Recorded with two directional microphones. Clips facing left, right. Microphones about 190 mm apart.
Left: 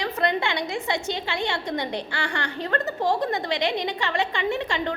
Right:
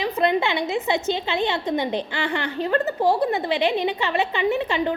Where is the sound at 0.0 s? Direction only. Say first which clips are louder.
Right 4 dB; 20° right (ahead or behind).